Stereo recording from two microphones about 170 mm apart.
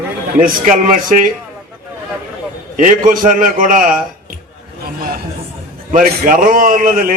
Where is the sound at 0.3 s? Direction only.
55° right (ahead or behind).